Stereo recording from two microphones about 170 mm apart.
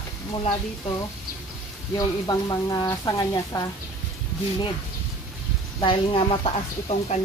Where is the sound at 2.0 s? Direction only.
20° left (ahead or behind).